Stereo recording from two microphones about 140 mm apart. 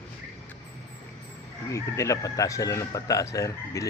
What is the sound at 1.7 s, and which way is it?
Speech, 20° left (ahead or behind).